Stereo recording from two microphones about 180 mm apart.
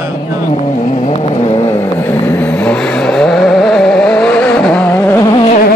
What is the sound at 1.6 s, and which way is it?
Vehicle, 10° left (ahead or behind).